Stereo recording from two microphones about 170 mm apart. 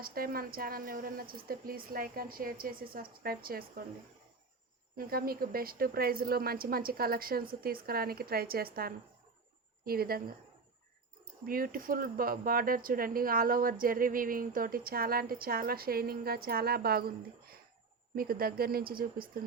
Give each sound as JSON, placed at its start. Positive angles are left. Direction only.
{"t": 0.0, "sound": "speech", "side_deg": -60}
{"t": 4.9, "sound": "speech", "side_deg": -60}
{"t": 11.4, "sound": "speech", "side_deg": -55}